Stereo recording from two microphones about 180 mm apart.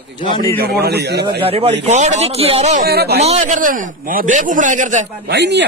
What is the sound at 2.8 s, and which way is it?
Speech, 60° right (ahead or behind).